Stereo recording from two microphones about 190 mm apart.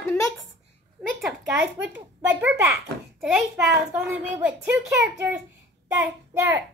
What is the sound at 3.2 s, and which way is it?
A woman's voice, centre (ahead or behind).